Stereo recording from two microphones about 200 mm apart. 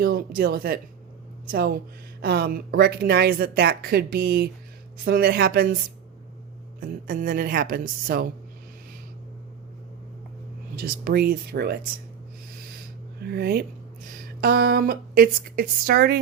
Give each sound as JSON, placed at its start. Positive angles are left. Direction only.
{"t": 0.0, "sound": "speech", "side_deg": -50}
{"t": 6.7, "sound": "speech", "side_deg": -45}
{"t": 10.8, "sound": "speech", "side_deg": -50}
{"t": 13.2, "sound": "speech", "side_deg": -50}